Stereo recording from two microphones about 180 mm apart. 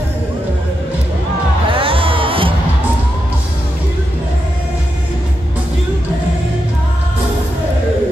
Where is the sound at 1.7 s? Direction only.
30° right (ahead or behind).